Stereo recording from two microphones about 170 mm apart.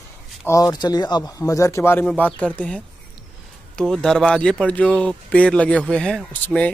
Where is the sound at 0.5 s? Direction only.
20° left (ahead or behind).